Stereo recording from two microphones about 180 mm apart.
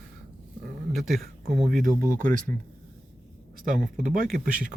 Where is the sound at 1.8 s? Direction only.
50° right (ahead or behind).